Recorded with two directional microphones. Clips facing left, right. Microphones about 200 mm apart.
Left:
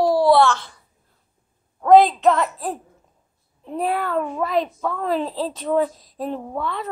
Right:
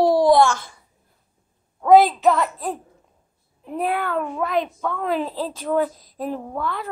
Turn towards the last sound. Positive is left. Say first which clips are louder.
# left 1 dB
turn(degrees=0)  # may be behind; listen again after turning